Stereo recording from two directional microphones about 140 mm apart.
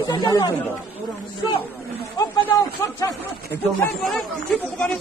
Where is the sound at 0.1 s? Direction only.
30° left (ahead or behind).